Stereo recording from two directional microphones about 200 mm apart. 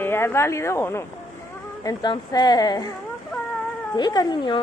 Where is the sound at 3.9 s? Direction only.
20° left (ahead or behind).